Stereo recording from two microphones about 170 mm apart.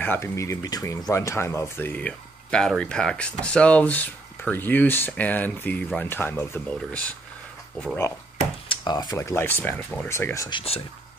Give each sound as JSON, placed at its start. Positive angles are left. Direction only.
{"t": 0.0, "sound": "speech", "side_deg": 15}
{"t": 8.6, "sound": "speech", "side_deg": 25}